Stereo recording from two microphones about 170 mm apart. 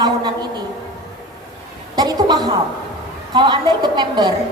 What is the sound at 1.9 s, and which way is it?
A woman's voice, 25° right (ahead or behind).